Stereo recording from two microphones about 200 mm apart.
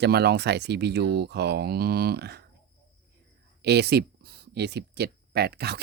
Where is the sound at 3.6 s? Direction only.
55° right (ahead or behind).